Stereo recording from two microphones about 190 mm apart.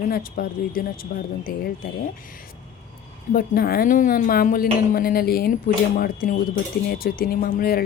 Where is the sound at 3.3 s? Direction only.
50° left (ahead or behind).